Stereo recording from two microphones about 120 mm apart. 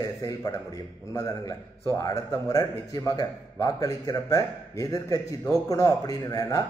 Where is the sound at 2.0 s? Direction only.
30° left (ahead or behind).